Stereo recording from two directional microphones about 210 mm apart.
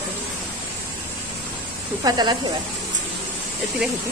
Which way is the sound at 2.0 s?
20° right (ahead or behind).